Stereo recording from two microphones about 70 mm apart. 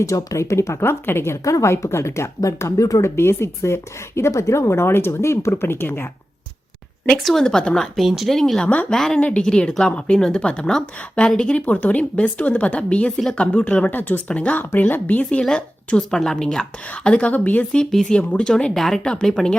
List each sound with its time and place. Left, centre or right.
0.0 s speech: left
3.2 s a woman's voice: left
7.2 s a woman's voice: centre
7.9 s speech: centre
8.7 s a woman's voice: centre
17.7 s a woman's voice: centre